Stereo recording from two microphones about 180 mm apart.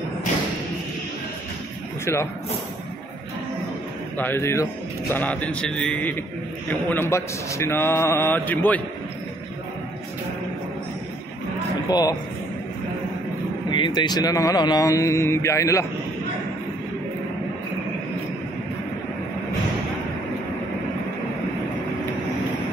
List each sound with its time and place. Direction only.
4.2 s speech: 15° left (ahead or behind)
11.9 s speech: 20° left (ahead or behind)
13.7 s speech: 25° left (ahead or behind)